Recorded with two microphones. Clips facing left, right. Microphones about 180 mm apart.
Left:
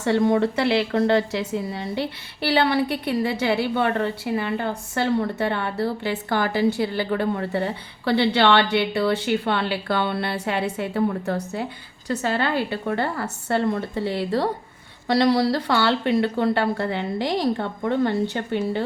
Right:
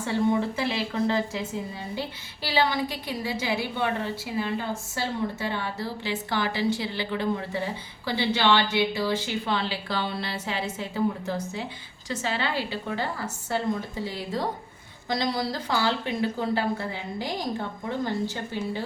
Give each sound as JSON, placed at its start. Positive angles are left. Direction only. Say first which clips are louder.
{"t": 0.0, "sound": "a woman's voice", "louder": "left 5 dB", "side_deg": 70}